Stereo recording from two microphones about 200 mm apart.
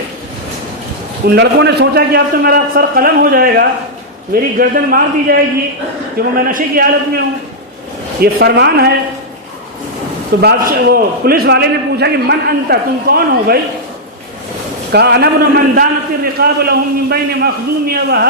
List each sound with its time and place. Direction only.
1.4 s a man's voice: 60° right (ahead or behind)
8.2 s a woman's voice: 55° right (ahead or behind)
10.4 s a man's voice: 50° right (ahead or behind)
14.9 s a man's voice: 55° right (ahead or behind)